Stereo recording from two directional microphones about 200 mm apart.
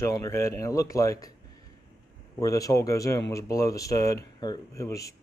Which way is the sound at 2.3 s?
15° left (ahead or behind).